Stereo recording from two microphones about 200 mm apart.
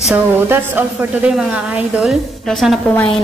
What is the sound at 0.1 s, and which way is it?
A woman's voice, 10° right (ahead or behind).